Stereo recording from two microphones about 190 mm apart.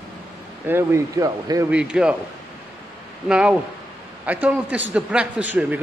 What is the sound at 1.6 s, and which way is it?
Speech, 5° right (ahead or behind).